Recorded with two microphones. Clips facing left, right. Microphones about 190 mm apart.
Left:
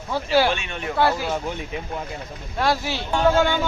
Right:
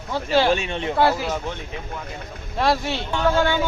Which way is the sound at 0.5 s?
30° right (ahead or behind).